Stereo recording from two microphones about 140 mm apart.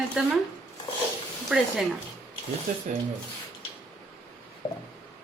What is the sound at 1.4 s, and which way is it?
Speech, centre (ahead or behind).